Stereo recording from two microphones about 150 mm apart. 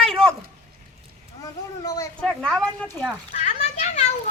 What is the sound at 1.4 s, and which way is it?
Speech, 25° left (ahead or behind).